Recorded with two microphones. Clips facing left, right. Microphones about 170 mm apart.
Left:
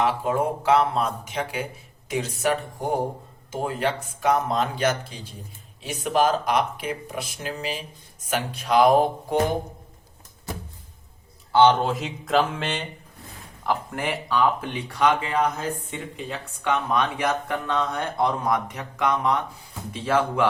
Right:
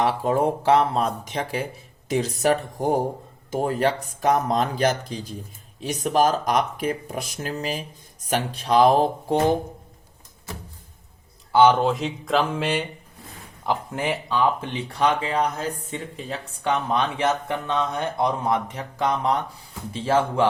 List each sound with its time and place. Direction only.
0.0 s speech: 35° right (ahead or behind)
11.5 s speech: 5° right (ahead or behind)
13.7 s speech: 20° right (ahead or behind)